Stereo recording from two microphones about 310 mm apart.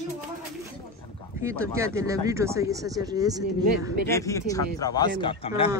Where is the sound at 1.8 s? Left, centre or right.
Centre.